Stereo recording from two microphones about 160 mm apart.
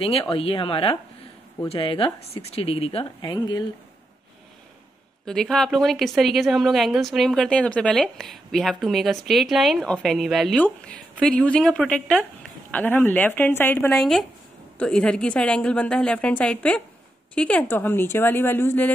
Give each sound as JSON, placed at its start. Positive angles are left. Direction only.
{"t": 0.0, "sound": "speech", "side_deg": 35}
{"t": 3.3, "sound": "a woman's voice", "side_deg": 25}
{"t": 5.2, "sound": "a woman's voice", "side_deg": 5}